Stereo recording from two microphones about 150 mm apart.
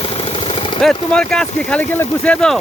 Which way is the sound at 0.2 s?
40° left (ahead or behind).